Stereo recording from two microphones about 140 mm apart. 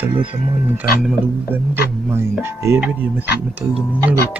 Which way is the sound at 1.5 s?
15° right (ahead or behind).